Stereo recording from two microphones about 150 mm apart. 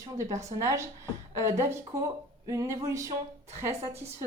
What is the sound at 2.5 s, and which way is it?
Speech, 20° right (ahead or behind).